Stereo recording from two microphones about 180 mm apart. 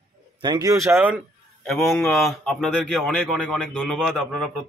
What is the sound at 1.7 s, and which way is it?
A man's voice, centre (ahead or behind).